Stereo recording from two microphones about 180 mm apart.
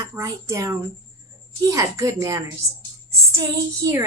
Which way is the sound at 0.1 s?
15° right (ahead or behind).